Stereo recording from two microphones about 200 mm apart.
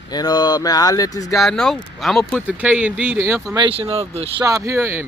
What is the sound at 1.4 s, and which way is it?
Speech, centre (ahead or behind).